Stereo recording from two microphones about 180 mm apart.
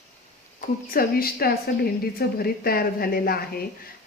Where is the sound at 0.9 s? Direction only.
55° left (ahead or behind).